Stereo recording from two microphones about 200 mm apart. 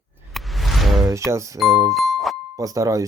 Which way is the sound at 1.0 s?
15° right (ahead or behind).